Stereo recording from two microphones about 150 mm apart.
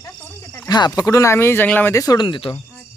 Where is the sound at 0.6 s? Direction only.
25° left (ahead or behind).